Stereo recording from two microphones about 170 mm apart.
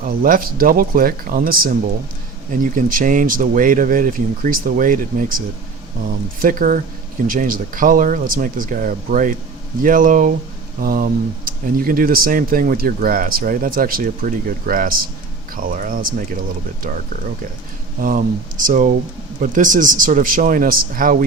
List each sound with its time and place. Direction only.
0.0 s speech: 55° right (ahead or behind)
18.0 s speech: 55° right (ahead or behind)